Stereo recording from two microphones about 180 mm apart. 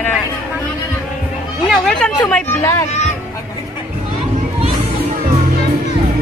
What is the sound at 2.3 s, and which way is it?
Speech, 10° left (ahead or behind).